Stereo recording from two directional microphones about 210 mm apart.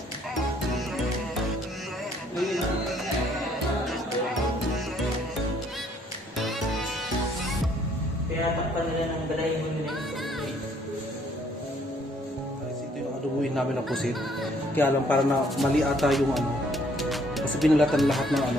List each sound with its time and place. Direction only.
13.6 s speech: centre (ahead or behind)